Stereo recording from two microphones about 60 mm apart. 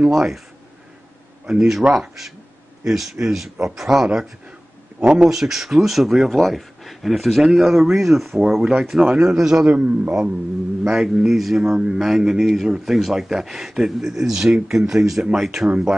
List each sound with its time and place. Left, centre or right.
0.1 s a man's voice: centre
1.4 s a man's voice: centre
10.8 s a man's voice: centre